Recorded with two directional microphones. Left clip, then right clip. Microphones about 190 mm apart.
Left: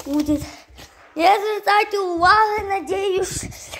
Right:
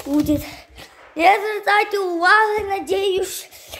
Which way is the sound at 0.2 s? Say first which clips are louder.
Right 2 dB; 5° right (ahead or behind).